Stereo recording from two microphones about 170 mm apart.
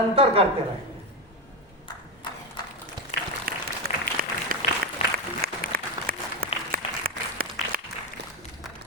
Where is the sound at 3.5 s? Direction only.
60° right (ahead or behind).